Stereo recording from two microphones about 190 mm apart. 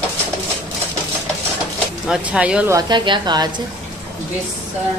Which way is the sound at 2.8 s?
25° right (ahead or behind).